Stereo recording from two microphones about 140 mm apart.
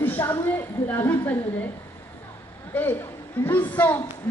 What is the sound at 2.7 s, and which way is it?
A woman's voice, 15° left (ahead or behind).